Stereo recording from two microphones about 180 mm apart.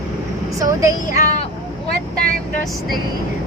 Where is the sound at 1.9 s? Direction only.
55° right (ahead or behind).